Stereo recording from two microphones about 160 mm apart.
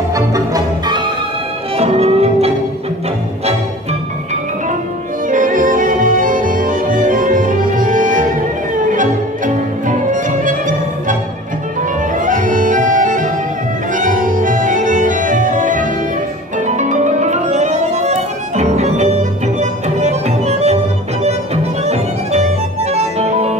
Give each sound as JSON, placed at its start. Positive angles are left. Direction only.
{"t": 0.1, "sound": "music", "side_deg": -20}
{"t": 1.8, "sound": "music", "side_deg": -40}
{"t": 5.3, "sound": "music", "side_deg": -55}
{"t": 8.9, "sound": "violin", "side_deg": -55}
{"t": 12.2, "sound": "music", "side_deg": -55}
{"t": 13.9, "sound": "organ", "side_deg": -55}
{"t": 16.5, "sound": "music", "side_deg": -50}
{"t": 21.8, "sound": "music", "side_deg": -45}